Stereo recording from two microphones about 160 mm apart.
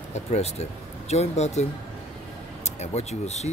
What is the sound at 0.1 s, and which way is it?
Speech, 45° left (ahead or behind).